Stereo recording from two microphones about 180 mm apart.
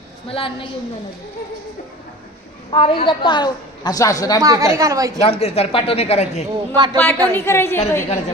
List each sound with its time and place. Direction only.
0.3 s speech: 30° left (ahead or behind)
2.6 s a woman's voice: 30° left (ahead or behind)
4.4 s a woman's voice: 20° right (ahead or behind)
5.4 s speech: 35° left (ahead or behind)
6.7 s speech: 25° right (ahead or behind)
7.3 s a woman's voice: 15° left (ahead or behind)